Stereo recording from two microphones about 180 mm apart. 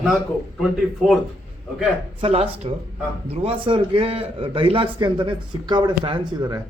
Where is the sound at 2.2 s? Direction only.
35° right (ahead or behind).